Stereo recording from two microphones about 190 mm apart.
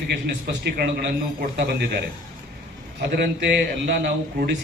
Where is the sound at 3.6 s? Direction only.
55° right (ahead or behind).